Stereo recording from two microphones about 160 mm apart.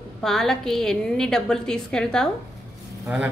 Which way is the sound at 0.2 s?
5° left (ahead or behind).